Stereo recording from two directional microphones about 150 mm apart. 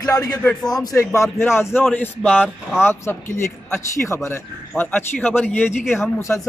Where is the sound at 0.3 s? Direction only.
15° left (ahead or behind).